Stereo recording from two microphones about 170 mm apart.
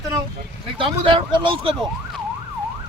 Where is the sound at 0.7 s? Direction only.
30° right (ahead or behind).